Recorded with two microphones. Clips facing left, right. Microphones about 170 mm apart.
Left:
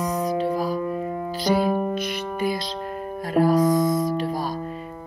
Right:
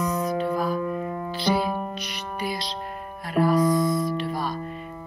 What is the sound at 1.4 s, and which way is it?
Music, 45° left (ahead or behind).